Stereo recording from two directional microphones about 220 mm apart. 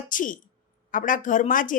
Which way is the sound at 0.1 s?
35° left (ahead or behind).